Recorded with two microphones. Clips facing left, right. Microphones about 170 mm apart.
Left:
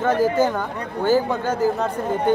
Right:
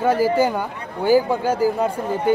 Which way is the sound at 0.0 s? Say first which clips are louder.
Right 1 dB; 10° right (ahead or behind).